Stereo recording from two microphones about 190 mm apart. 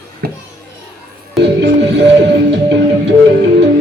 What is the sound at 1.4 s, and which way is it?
Music, 65° right (ahead or behind).